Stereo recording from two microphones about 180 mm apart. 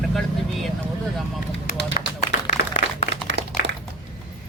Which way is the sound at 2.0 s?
40° left (ahead or behind).